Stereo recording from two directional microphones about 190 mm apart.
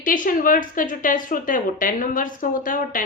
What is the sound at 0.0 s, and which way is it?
A woman's voice, 45° left (ahead or behind).